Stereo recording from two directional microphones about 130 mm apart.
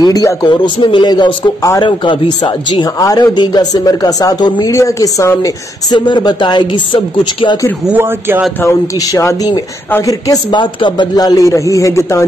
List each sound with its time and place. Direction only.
0.0 s a man's voice: 30° left (ahead or behind)
5.9 s speech: 35° left (ahead or behind)
7.8 s speech: 15° right (ahead or behind)
8.6 s a man's voice: 25° left (ahead or behind)